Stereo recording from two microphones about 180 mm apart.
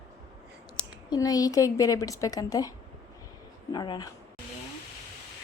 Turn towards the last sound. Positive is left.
turn(degrees=20)  # may be behind; listen again after turning